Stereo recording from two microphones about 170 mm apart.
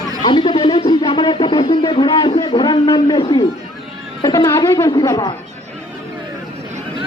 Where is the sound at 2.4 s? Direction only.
25° left (ahead or behind).